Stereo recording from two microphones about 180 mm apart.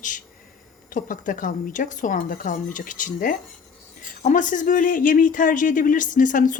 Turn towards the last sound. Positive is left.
turn(degrees=45)  # may be behind; listen again after turning